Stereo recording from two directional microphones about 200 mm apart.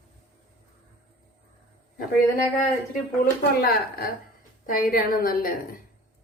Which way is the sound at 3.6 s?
50° left (ahead or behind).